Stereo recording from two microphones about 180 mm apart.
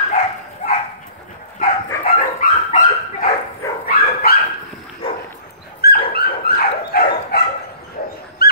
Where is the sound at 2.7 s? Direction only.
40° left (ahead or behind).